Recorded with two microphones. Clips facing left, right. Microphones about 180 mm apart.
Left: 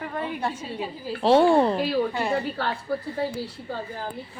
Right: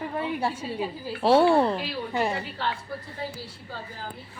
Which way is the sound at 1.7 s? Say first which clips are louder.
Left 8 dB; 45° left (ahead or behind).